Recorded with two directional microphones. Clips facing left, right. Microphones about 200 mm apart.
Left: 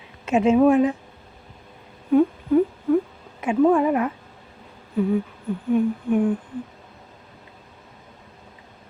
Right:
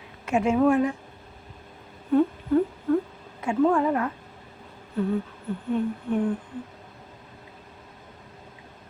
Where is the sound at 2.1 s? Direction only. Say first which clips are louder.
Left 3 dB; 10° left (ahead or behind).